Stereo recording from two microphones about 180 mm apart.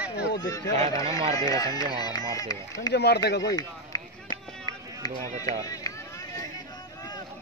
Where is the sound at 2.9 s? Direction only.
65° left (ahead or behind).